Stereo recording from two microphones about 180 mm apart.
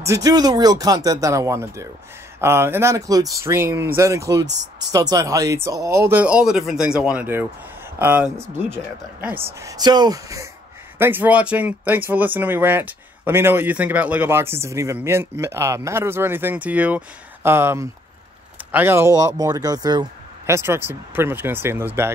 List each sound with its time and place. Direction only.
0.0 s speech: 20° right (ahead or behind)